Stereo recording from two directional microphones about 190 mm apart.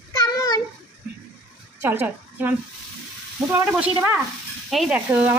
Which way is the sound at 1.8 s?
10° right (ahead or behind).